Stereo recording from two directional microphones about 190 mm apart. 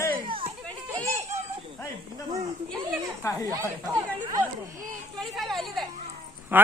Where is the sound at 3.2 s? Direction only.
15° left (ahead or behind).